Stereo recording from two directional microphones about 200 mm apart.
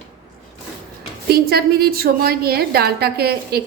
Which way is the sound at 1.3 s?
50° right (ahead or behind).